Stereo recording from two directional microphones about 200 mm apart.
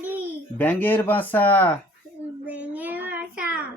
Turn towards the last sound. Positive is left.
turn(degrees=-5)  # may be behind; listen again after turning